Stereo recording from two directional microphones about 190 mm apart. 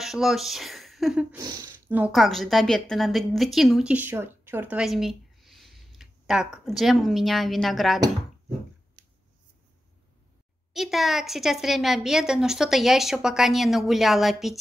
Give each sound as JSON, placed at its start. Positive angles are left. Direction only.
{"t": 0.0, "sound": "a woman's voice", "side_deg": 0}
{"t": 1.4, "sound": "speech", "side_deg": -20}
{"t": 1.9, "sound": "a woman's voice", "side_deg": -5}
{"t": 10.7, "sound": "a woman's voice", "side_deg": 0}